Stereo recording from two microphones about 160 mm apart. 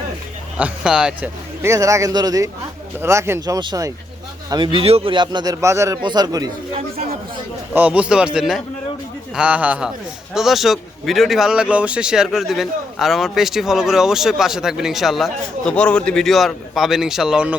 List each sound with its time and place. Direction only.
0.6 s a man's voice: 5° right (ahead or behind)
1.6 s a man's voice: 20° right (ahead or behind)
7.7 s a man's voice: 10° right (ahead or behind)